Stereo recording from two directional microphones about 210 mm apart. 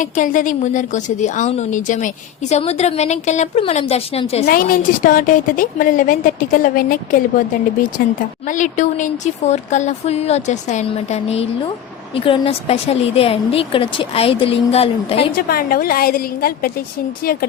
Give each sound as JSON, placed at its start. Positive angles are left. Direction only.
{"t": 0.0, "sound": "speech", "side_deg": 40}
{"t": 4.4, "sound": "speech", "side_deg": 45}
{"t": 8.4, "sound": "a woman's voice", "side_deg": 35}
{"t": 15.4, "sound": "a woman's voice", "side_deg": 45}